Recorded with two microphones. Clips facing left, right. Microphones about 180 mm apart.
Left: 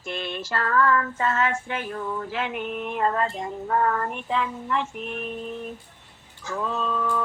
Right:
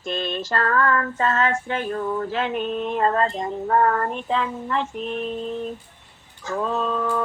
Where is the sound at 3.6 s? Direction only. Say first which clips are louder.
Right 4 dB; 50° right (ahead or behind).